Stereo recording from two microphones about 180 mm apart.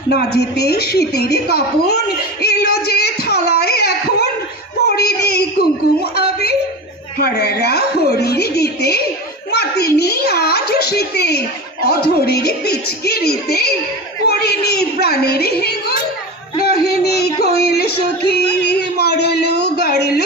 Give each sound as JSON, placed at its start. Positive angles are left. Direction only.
{"t": 0.1, "sound": "a child's voice", "side_deg": 65}
{"t": 4.9, "sound": "a sound", "side_deg": 65}
{"t": 7.2, "sound": "a child's voice", "side_deg": 65}